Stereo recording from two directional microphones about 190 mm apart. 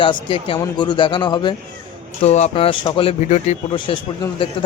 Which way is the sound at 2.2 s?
35° left (ahead or behind).